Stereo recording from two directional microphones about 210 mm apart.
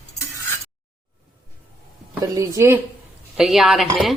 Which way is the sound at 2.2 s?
15° right (ahead or behind).